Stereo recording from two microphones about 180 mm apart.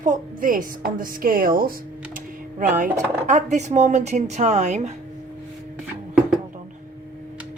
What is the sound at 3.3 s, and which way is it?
Speech, 40° right (ahead or behind).